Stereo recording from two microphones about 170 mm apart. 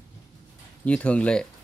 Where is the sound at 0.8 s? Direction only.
5° left (ahead or behind).